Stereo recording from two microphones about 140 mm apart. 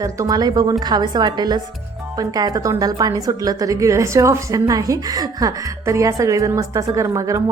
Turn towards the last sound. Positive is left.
turn(degrees=-20)  # may be behind; listen again after turning